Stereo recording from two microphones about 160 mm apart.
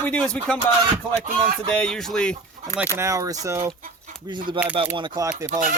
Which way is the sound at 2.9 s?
20° right (ahead or behind).